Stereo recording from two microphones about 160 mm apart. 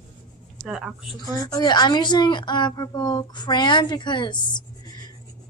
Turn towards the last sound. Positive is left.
turn(degrees=25)  # may be behind; listen again after turning